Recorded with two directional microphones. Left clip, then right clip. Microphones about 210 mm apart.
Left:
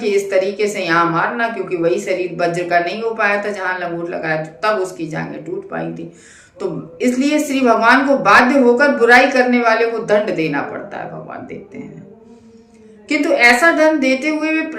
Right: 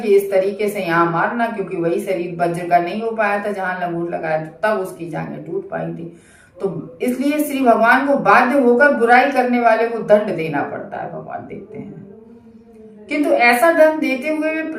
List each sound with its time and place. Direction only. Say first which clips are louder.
0.0 s a woman's voice: right 1 dB; 45° left (ahead or behind)
6.6 s a woman's voice: left 2 dB; 45° left (ahead or behind)
13.1 s a woman's voice: left 2 dB; 45° left (ahead or behind)